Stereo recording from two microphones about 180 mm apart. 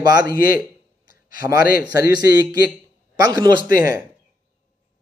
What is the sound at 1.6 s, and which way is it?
Speech, 60° left (ahead or behind).